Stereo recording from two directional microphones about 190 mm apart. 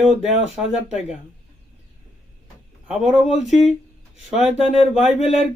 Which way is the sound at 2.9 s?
5° right (ahead or behind).